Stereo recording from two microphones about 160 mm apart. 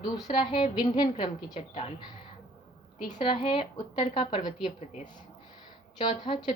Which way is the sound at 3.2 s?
35° left (ahead or behind).